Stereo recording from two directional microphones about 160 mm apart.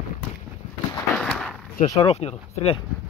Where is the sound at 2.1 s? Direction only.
40° left (ahead or behind).